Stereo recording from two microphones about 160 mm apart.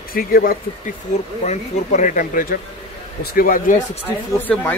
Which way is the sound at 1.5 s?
50° left (ahead or behind).